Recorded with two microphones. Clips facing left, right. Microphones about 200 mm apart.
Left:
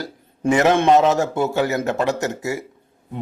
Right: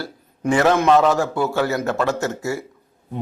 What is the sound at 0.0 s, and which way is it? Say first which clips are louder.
A man's voice: left 2 dB; 20° left (ahead or behind).